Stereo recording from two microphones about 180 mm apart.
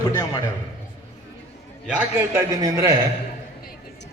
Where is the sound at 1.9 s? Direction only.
10° right (ahead or behind).